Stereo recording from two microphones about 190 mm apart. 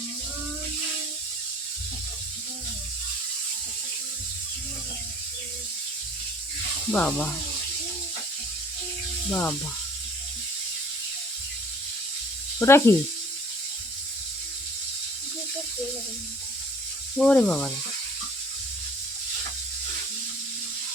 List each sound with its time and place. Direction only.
6.9 s speech: 10° left (ahead or behind)
9.3 s speech: 10° left (ahead or behind)
12.5 s speech: 15° left (ahead or behind)
17.2 s speech: 5° left (ahead or behind)